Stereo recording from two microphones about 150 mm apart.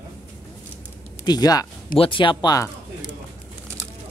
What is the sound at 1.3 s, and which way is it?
Speech, 25° left (ahead or behind).